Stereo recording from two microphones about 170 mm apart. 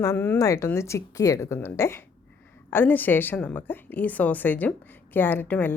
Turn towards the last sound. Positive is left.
turn(degrees=10)  # may be behind; listen again after turning